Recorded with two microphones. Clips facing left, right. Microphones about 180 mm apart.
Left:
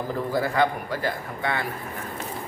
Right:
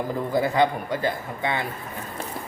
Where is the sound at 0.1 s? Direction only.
20° right (ahead or behind).